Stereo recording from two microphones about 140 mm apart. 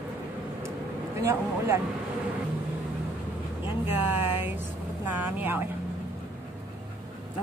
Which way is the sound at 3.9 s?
15° right (ahead or behind).